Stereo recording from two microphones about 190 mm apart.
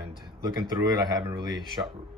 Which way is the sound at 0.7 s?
20° right (ahead or behind).